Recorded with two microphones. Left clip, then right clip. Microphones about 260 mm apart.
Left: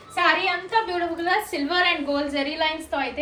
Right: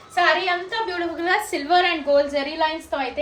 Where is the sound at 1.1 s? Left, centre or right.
Right.